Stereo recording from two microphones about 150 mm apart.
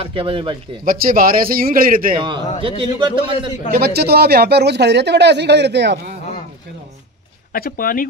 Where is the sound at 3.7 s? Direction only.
90° right.